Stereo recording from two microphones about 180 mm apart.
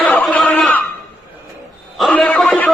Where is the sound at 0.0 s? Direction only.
5° left (ahead or behind).